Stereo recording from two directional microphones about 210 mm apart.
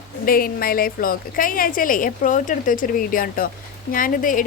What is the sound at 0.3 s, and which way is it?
Speech, 45° left (ahead or behind).